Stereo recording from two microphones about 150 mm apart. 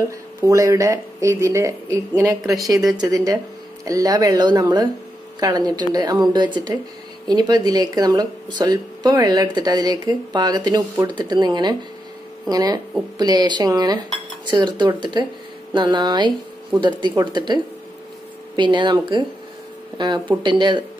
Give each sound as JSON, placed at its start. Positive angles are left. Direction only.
{"t": 0.4, "sound": "speech", "side_deg": -20}
{"t": 2.4, "sound": "speech", "side_deg": 0}
{"t": 3.0, "sound": "speech", "side_deg": -25}
{"t": 18.6, "sound": "speech", "side_deg": -30}